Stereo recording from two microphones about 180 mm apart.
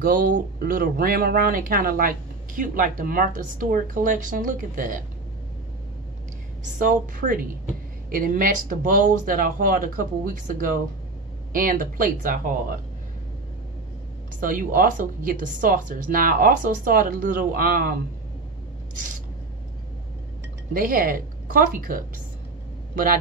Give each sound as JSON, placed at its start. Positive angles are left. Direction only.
{"t": 0.0, "sound": "speech", "side_deg": -50}
{"t": 6.6, "sound": "speech", "side_deg": -50}
{"t": 14.4, "sound": "speech", "side_deg": -50}
{"t": 20.7, "sound": "speech", "side_deg": -55}